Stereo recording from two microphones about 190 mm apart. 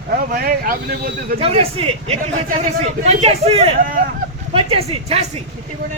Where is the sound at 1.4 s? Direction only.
30° right (ahead or behind).